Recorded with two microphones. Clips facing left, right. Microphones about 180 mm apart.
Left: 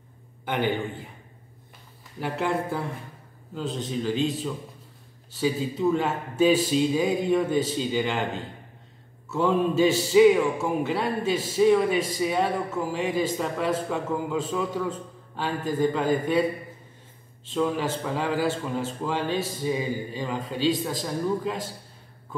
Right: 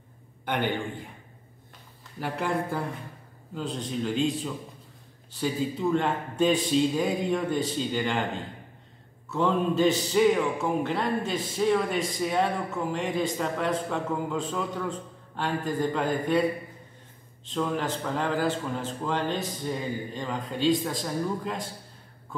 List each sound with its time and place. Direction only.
0.5 s a man's voice: 5° left (ahead or behind)
2.1 s a man's voice: centre (ahead or behind)
9.3 s a man's voice: 5° left (ahead or behind)
17.5 s a man's voice: 5° left (ahead or behind)